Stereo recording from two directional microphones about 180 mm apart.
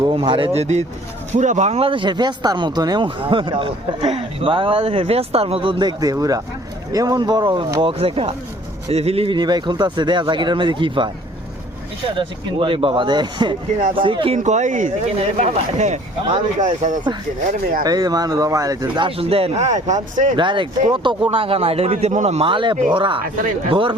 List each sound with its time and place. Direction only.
0.0 s speech: 25° right (ahead or behind)
14.3 s speech: 40° right (ahead or behind)
17.8 s speech: 20° right (ahead or behind); by 20.3 s 40° right (ahead or behind)
20.3 s speech: 25° right (ahead or behind)